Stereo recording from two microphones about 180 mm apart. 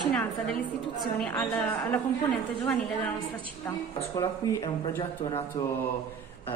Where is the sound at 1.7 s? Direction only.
10° left (ahead or behind).